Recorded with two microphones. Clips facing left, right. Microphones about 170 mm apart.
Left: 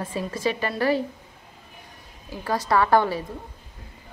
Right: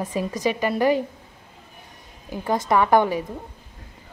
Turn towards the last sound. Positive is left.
turn(degrees=-15)  # may be behind; listen again after turning